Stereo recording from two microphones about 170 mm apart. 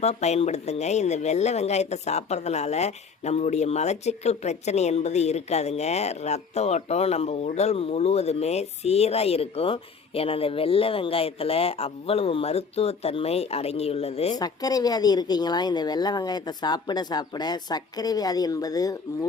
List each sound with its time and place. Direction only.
0.0 s speech: 40° left (ahead or behind)
14.3 s speech: 20° left (ahead or behind)